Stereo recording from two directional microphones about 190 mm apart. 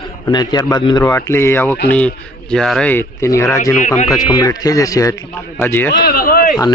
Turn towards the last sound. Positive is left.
turn(degrees=50)  # may be behind; listen again after turning